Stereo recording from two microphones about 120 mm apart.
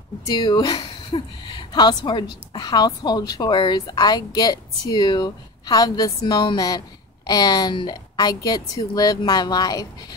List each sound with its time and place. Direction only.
0.2 s a woman's voice: 35° left (ahead or behind)